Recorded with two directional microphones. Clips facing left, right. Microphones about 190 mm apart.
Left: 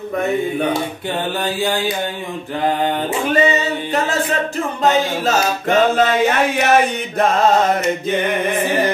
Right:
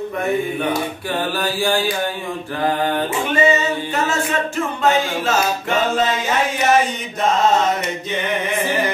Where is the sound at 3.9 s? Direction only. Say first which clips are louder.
Left 4 dB; 35° left (ahead or behind).